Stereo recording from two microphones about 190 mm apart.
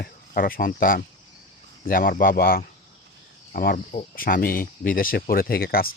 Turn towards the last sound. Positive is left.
turn(degrees=50)  # may be behind; listen again after turning